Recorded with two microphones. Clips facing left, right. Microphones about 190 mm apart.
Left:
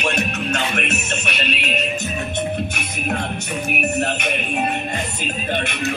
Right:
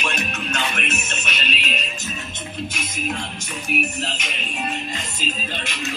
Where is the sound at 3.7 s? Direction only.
60° left (ahead or behind).